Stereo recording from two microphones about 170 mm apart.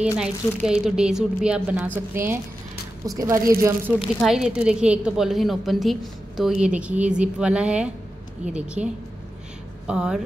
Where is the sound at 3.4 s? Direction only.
60° right (ahead or behind).